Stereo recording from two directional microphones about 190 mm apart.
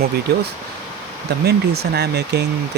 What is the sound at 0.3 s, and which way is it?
Speech, 55° right (ahead or behind).